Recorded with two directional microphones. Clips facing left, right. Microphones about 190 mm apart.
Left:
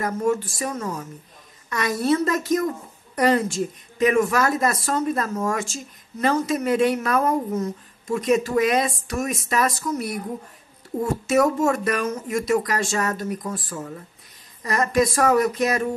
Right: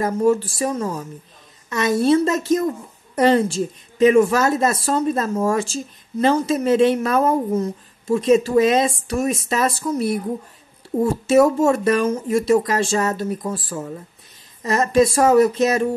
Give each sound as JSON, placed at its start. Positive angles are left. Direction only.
{"t": 0.0, "sound": "a woman's voice", "side_deg": -30}
{"t": 14.6, "sound": "a woman's voice", "side_deg": -25}